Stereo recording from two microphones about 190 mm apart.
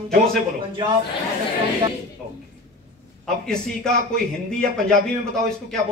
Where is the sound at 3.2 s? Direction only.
5° left (ahead or behind).